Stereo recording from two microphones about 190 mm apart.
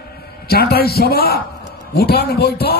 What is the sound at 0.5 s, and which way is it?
Speech, 55° left (ahead or behind).